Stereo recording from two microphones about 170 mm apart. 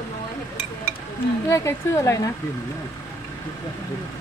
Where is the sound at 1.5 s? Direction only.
15° left (ahead or behind).